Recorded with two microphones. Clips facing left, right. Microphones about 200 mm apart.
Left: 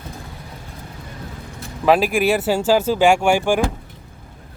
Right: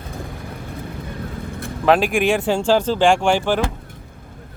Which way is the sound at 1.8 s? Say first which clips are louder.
Even; 5° left (ahead or behind).